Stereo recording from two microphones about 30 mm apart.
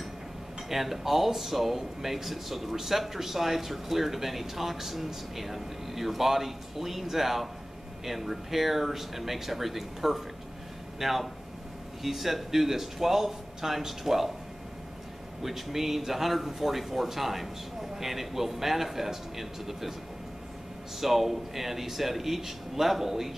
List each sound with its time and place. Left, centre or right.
0.7 s speech: centre
15.4 s speech: centre
21.0 s speech: centre